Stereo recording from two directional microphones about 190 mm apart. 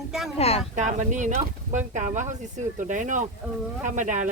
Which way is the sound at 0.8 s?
40° right (ahead or behind).